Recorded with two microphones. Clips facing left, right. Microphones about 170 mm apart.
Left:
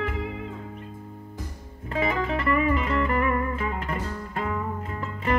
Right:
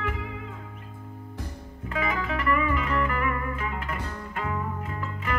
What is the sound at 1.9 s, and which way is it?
Music, 30° left (ahead or behind).